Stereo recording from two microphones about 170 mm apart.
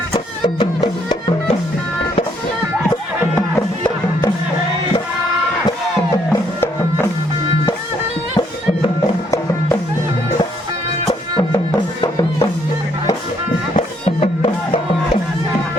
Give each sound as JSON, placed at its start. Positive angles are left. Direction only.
{"t": 0.1, "sound": "music", "side_deg": 25}
{"t": 12.0, "sound": "music", "side_deg": 20}
{"t": 13.7, "sound": "music", "side_deg": 35}